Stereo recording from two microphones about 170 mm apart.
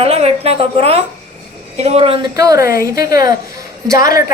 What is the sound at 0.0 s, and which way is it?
A woman's voice, 35° right (ahead or behind).